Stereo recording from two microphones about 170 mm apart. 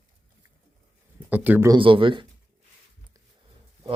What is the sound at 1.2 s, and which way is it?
Speech, 10° right (ahead or behind).